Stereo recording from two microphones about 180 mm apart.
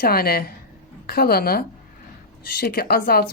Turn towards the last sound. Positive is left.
turn(degrees=55)  # may be behind; listen again after turning